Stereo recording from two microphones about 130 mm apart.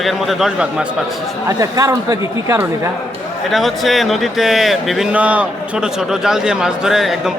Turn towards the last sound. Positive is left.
turn(degrees=0)  # may be behind; listen again after turning